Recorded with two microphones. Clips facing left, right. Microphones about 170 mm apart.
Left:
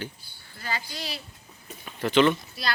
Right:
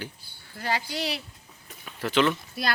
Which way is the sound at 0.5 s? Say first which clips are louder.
Right 5 dB; 75° right (ahead or behind).